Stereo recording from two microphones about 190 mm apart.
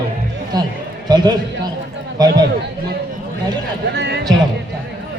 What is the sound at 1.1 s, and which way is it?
Speech, 20° right (ahead or behind).